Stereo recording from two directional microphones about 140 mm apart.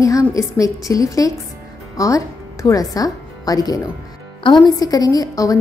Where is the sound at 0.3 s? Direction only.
25° left (ahead or behind).